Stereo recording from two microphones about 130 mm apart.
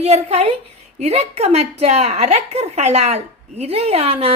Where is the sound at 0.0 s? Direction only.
55° right (ahead or behind).